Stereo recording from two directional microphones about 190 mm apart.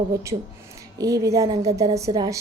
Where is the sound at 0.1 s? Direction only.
15° right (ahead or behind).